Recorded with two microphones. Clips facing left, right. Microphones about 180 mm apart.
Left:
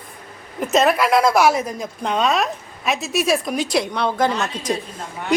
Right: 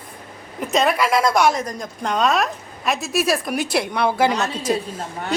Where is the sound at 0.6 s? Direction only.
Centre (ahead or behind).